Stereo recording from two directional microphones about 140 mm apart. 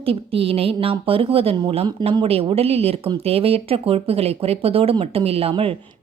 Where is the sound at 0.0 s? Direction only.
40° right (ahead or behind).